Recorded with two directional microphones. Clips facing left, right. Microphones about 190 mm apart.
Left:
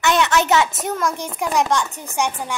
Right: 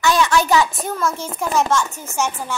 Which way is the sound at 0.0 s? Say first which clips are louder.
Right 1 dB; 20° left (ahead or behind).